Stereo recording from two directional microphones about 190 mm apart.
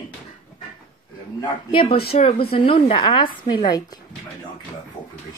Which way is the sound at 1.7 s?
30° left (ahead or behind).